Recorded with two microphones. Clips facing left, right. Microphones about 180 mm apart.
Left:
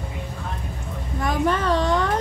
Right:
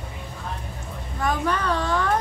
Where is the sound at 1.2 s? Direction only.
25° left (ahead or behind).